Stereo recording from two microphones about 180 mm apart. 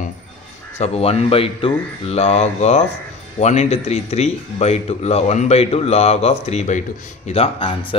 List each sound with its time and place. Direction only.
0.7 s a man's voice: 35° left (ahead or behind)